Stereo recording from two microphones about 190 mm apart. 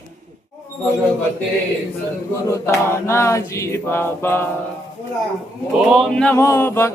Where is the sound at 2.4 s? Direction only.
15° left (ahead or behind).